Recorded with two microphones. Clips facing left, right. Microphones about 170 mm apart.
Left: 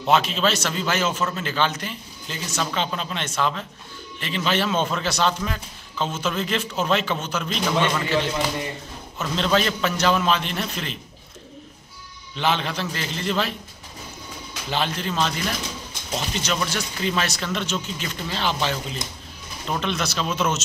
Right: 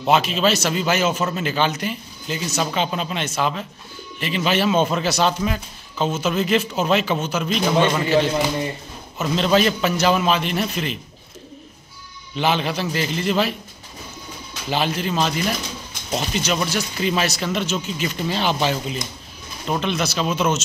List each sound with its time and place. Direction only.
0.0 s a man's voice: 5° right (ahead or behind)
7.7 s a man's voice: 35° right (ahead or behind)
9.3 s a man's voice: 10° right (ahead or behind)
12.4 s a man's voice: 10° right (ahead or behind)
14.7 s a man's voice: 5° right (ahead or behind)
16.4 s a man's voice: 5° right (ahead or behind)
19.8 s speech: 5° right (ahead or behind)